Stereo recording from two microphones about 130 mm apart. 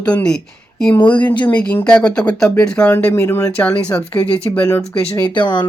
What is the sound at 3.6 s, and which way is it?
Speech, 10° left (ahead or behind).